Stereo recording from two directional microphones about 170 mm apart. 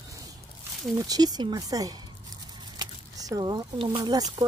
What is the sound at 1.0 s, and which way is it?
Speech, 20° right (ahead or behind).